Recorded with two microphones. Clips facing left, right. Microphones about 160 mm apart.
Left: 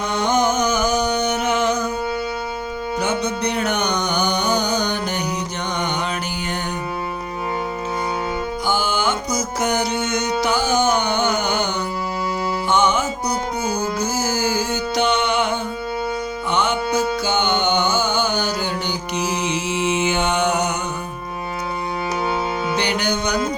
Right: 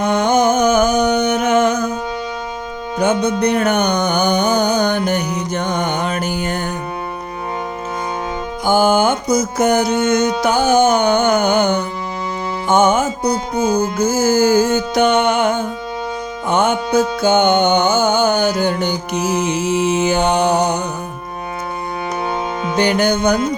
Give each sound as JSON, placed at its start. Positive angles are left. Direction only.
{"t": 0.0, "sound": "music", "side_deg": -55}
{"t": 3.0, "sound": "music", "side_deg": -55}
{"t": 8.6, "sound": "music", "side_deg": -50}
{"t": 22.7, "sound": "music", "side_deg": -45}